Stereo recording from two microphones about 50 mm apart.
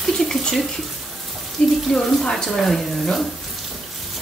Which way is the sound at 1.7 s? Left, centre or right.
Centre.